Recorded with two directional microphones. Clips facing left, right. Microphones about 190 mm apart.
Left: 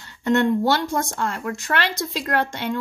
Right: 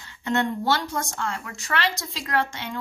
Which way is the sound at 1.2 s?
55° left (ahead or behind).